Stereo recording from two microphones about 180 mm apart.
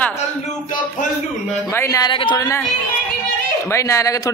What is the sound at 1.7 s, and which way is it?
Speech, 15° left (ahead or behind).